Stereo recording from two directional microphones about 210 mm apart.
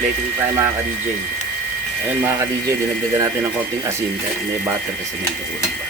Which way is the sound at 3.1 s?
15° right (ahead or behind).